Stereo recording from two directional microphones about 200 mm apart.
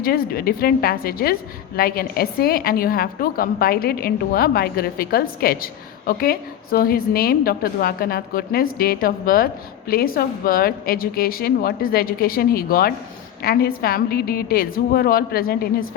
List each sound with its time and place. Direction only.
0.0 s a woman's voice: 50° left (ahead or behind)